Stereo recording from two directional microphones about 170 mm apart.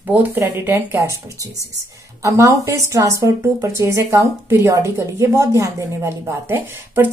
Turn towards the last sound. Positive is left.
turn(degrees=-10)  # may be behind; listen again after turning